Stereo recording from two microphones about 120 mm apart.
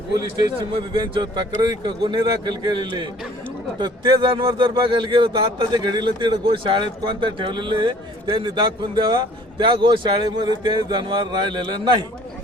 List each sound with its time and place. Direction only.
0.6 s speech: 40° right (ahead or behind)